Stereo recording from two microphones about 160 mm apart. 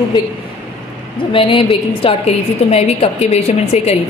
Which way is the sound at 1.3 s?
35° left (ahead or behind).